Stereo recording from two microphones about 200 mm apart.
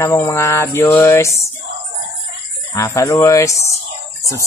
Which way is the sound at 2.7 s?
15° left (ahead or behind).